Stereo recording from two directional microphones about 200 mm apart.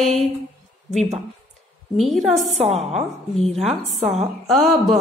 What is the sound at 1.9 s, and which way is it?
A woman's voice, centre (ahead or behind).